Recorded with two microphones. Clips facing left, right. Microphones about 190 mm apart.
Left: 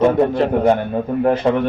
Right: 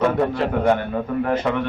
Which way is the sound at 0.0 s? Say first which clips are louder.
Left 5 dB; 20° left (ahead or behind).